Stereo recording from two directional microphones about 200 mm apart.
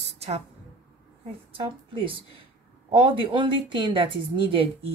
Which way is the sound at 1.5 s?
25° right (ahead or behind).